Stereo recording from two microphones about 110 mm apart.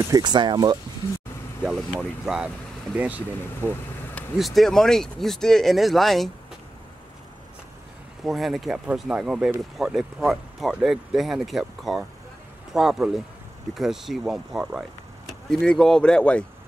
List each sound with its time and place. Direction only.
0.1 s speech: 40° right (ahead or behind)
1.6 s speech: 5° right (ahead or behind)
4.4 s speech: centre (ahead or behind)
8.2 s speech: centre (ahead or behind)
15.6 s speech: 5° left (ahead or behind)